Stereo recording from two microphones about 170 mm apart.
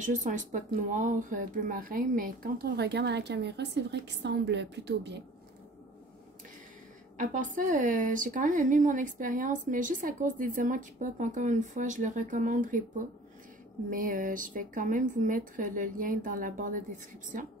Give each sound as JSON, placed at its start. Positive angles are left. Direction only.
{"t": 0.0, "sound": "speech", "side_deg": -50}
{"t": 7.2, "sound": "a woman's voice", "side_deg": -50}
{"t": 13.8, "sound": "a woman's voice", "side_deg": -55}